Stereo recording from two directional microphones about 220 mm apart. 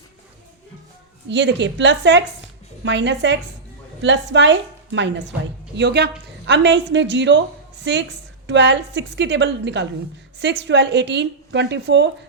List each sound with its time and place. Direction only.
1.3 s a woman's voice: 55° right (ahead or behind)